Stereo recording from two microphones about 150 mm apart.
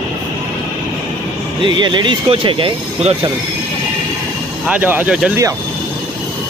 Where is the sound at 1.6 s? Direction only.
30° right (ahead or behind).